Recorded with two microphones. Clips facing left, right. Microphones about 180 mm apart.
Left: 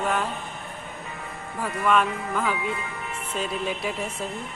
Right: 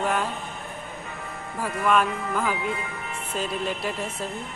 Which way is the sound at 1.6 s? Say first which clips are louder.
Even; centre (ahead or behind).